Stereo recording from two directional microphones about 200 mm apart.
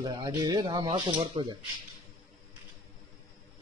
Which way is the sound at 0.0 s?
20° right (ahead or behind).